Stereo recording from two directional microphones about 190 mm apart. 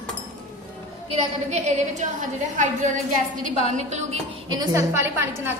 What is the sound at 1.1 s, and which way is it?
Speech, 35° right (ahead or behind).